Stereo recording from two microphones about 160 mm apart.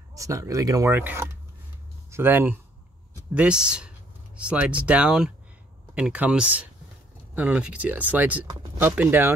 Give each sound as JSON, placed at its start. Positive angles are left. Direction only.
{"t": 0.1, "sound": "speech", "side_deg": -20}